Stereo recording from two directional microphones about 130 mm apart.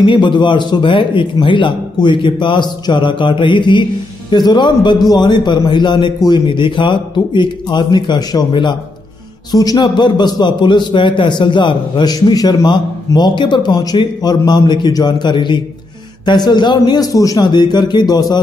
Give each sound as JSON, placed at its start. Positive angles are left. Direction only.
{"t": 0.0, "sound": "a man's voice", "side_deg": 35}